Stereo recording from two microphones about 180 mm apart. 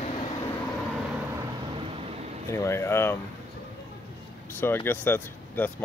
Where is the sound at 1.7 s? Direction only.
30° right (ahead or behind).